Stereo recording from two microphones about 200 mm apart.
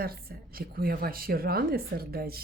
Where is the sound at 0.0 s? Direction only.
50° right (ahead or behind).